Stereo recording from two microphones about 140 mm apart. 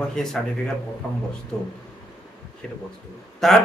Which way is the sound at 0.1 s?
5° left (ahead or behind).